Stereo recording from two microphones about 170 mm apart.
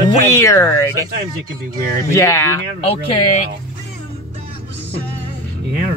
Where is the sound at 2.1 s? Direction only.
15° left (ahead or behind).